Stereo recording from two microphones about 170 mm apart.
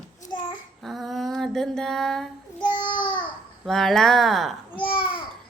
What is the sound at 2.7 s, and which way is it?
Babbling, 25° left (ahead or behind).